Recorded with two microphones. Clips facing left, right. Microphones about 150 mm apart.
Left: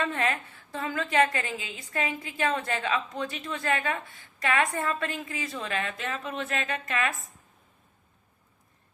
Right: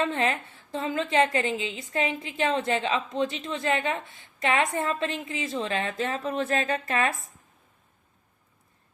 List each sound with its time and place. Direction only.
0.0 s a woman's voice: 25° right (ahead or behind)